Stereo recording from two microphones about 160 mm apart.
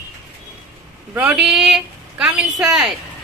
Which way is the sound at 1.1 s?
5° right (ahead or behind).